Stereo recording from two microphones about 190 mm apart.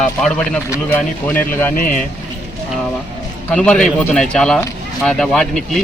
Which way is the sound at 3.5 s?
5° left (ahead or behind).